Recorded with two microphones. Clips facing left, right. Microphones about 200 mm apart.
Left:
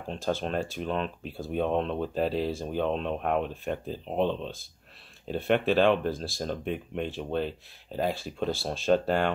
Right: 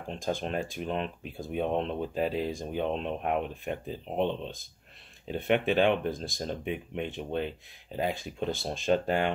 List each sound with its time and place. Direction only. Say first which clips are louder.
0.1 s speech: left 2 dB; 15° right (ahead or behind)